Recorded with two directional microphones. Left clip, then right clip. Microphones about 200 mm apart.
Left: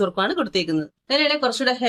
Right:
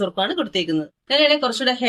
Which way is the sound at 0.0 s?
25° left (ahead or behind).